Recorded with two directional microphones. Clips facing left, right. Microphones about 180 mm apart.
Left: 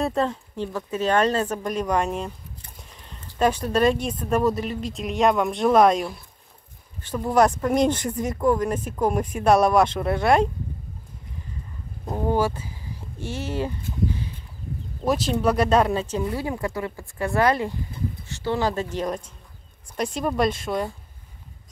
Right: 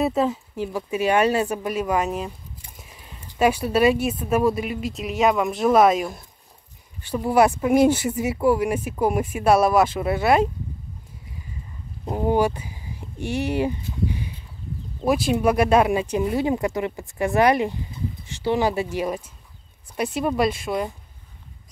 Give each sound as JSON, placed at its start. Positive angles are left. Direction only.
{"t": 0.0, "sound": "speech", "side_deg": -5}
{"t": 12.1, "sound": "speech", "side_deg": -15}